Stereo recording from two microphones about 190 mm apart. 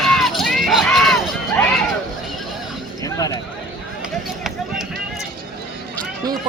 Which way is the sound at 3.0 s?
20° left (ahead or behind).